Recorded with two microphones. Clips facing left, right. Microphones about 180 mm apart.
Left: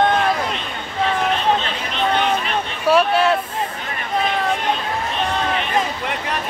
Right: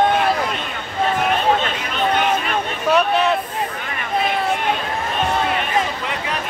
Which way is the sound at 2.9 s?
5° left (ahead or behind).